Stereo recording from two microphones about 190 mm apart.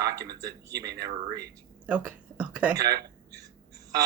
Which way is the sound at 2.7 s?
60° right (ahead or behind).